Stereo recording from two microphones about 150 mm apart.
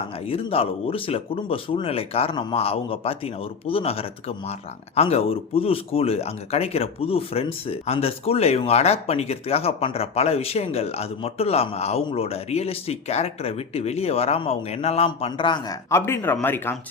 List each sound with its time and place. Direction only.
0.3 s speech: 40° left (ahead or behind); by 16.7 s 15° left (ahead or behind)